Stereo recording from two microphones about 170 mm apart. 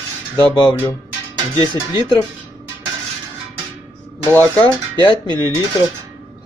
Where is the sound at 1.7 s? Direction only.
25° left (ahead or behind).